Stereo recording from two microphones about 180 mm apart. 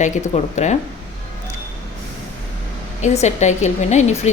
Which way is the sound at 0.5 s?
40° left (ahead or behind).